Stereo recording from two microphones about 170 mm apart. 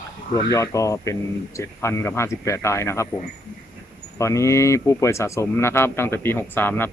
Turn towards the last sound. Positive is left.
turn(degrees=10)  # may be behind; listen again after turning